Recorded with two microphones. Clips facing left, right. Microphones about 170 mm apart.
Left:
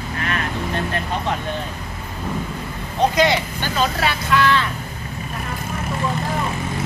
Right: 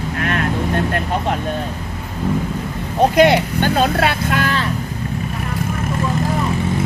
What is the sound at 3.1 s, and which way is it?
Speech, 60° right (ahead or behind).